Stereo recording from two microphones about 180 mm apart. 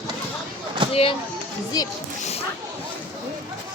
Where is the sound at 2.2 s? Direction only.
35° left (ahead or behind).